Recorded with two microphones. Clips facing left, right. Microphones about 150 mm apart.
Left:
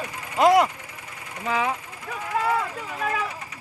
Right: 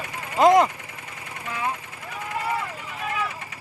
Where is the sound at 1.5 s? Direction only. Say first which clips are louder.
Left 4 dB; 90° left.